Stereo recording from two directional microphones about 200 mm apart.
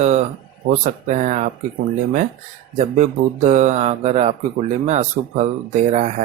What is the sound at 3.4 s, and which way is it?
Speech, 35° right (ahead or behind).